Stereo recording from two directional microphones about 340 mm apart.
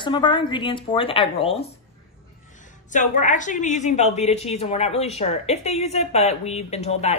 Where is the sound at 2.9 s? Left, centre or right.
Left.